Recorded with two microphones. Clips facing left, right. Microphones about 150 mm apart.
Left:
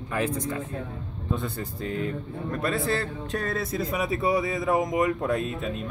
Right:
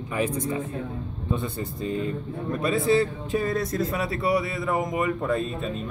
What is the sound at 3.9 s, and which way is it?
A man's voice, 20° left (ahead or behind).